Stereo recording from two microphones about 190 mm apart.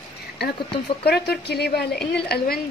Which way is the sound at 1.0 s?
55° left (ahead or behind).